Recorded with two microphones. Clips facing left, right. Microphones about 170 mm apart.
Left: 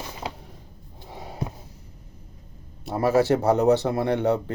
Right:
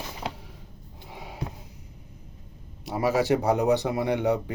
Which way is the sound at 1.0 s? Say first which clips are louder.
Left 3 dB; 40° left (ahead or behind).